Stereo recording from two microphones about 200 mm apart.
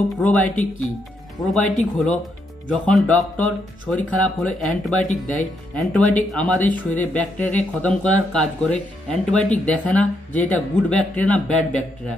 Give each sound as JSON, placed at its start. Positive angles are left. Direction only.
{"t": 0.2, "sound": "speech", "side_deg": 5}
{"t": 5.0, "sound": "speech", "side_deg": 35}
{"t": 5.8, "sound": "speech", "side_deg": 0}